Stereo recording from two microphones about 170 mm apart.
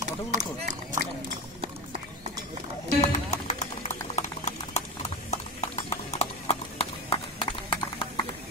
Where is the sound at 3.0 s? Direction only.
40° left (ahead or behind).